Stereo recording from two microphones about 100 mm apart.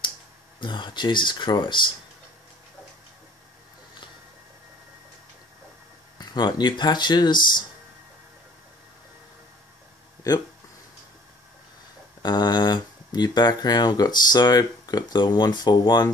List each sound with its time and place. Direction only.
0.6 s speech: 50° left (ahead or behind)
6.1 s speech: 45° left (ahead or behind)
12.2 s speech: 45° left (ahead or behind)